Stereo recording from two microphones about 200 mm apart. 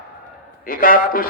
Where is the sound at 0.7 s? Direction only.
45° left (ahead or behind).